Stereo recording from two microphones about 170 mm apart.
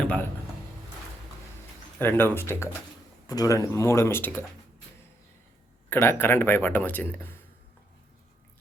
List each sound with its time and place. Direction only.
0.0 s speech: 10° left (ahead or behind)
2.0 s speech: 10° left (ahead or behind)
5.9 s speech: 15° left (ahead or behind)